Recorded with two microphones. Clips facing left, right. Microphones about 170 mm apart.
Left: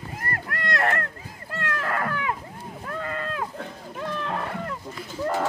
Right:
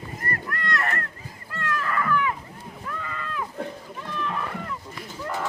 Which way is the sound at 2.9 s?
40° left (ahead or behind).